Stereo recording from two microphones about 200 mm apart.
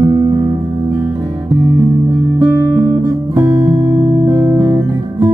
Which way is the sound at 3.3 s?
15° right (ahead or behind).